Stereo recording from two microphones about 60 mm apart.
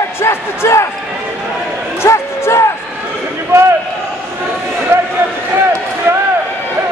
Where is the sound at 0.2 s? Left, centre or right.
Left.